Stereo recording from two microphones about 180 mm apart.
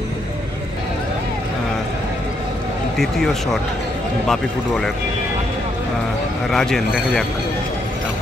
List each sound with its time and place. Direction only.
4.3 s a man's voice: centre (ahead or behind)
6.5 s a man's voice: centre (ahead or behind)